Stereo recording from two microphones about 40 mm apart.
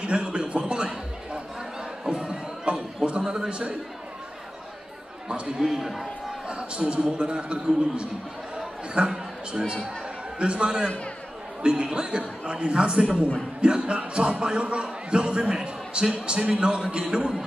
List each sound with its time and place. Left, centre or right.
0.0 s a sound: right
2.0 s crowd: right
3.3 s a man's voice: right
5.3 s speech: centre
6.4 s a man's voice: right
8.5 s a sound: centre
10.4 s a man's voice: right